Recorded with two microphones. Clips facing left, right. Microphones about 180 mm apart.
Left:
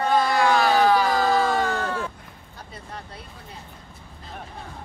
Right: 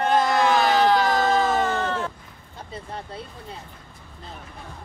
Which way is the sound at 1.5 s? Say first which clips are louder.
Right 1 dB; centre (ahead or behind).